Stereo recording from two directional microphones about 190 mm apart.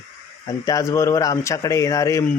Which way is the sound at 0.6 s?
15° left (ahead or behind).